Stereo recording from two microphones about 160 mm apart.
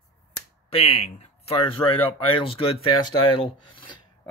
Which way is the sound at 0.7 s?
40° left (ahead or behind).